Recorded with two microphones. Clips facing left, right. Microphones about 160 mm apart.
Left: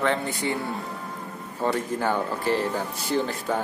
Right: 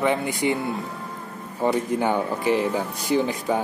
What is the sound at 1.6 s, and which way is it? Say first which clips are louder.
Speech: right 4 dB; 15° right (ahead or behind).